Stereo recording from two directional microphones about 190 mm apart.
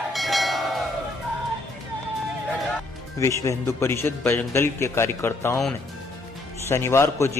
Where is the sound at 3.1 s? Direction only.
15° left (ahead or behind).